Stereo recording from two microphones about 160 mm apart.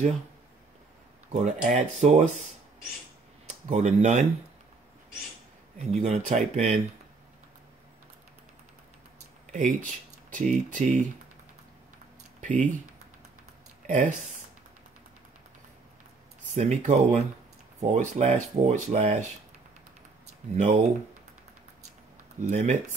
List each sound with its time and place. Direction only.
1.3 s speech: 45° right (ahead or behind)
3.4 s speech: 45° right (ahead or behind)
5.9 s speech: 40° right (ahead or behind)
9.5 s speech: 55° right (ahead or behind)
12.4 s a sound: 50° right (ahead or behind)
13.8 s speech: 50° right (ahead or behind)
16.4 s speech: 45° right (ahead or behind)
20.5 s speech: 45° right (ahead or behind)
22.4 s speech: 50° right (ahead or behind)